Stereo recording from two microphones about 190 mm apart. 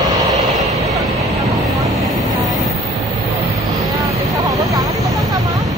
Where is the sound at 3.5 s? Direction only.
15° right (ahead or behind).